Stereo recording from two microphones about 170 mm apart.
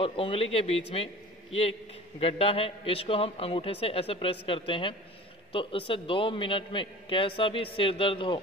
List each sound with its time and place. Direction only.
0.0 s a man's voice: 30° left (ahead or behind)